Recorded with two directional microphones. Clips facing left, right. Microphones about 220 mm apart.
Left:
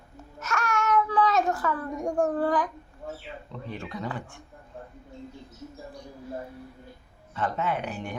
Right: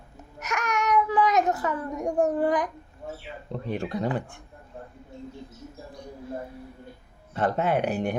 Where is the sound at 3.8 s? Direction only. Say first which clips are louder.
Right 7 dB; 35° right (ahead or behind).